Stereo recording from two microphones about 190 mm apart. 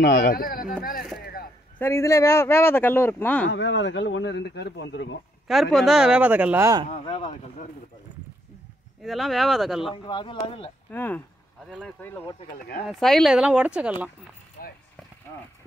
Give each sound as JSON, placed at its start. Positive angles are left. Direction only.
{"t": 0.0, "sound": "speech", "side_deg": 50}
{"t": 1.2, "sound": "a sound", "side_deg": 50}
{"t": 1.8, "sound": "speech", "side_deg": 15}
{"t": 3.4, "sound": "speech", "side_deg": 70}
{"t": 5.5, "sound": "speech", "side_deg": 0}
{"t": 6.9, "sound": "speech", "side_deg": 25}
{"t": 9.0, "sound": "speech", "side_deg": 0}
{"t": 9.9, "sound": "speech", "side_deg": 25}
{"t": 10.9, "sound": "speech", "side_deg": 10}
{"t": 14.6, "sound": "speech", "side_deg": 50}